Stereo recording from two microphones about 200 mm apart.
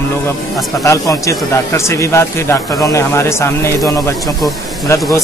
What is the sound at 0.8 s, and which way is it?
Speech, 15° left (ahead or behind).